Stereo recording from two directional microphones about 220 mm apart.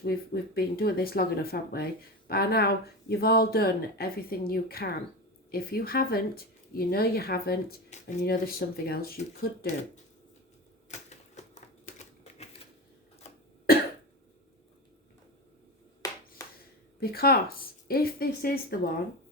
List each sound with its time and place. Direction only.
0.0 s speech: 45° left (ahead or behind)
10.9 s typewriter: 30° left (ahead or behind)
16.0 s clapping: 15° left (ahead or behind)
16.4 s a sound: 15° left (ahead or behind)
17.0 s speech: 45° left (ahead or behind)